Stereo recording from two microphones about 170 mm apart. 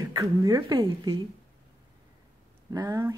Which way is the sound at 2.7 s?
20° right (ahead or behind).